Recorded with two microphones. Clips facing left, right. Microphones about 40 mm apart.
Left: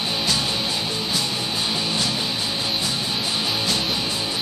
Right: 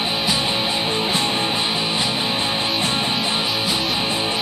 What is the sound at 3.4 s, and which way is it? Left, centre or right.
Music, centre.